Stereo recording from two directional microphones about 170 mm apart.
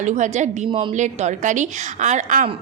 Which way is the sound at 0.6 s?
30° right (ahead or behind).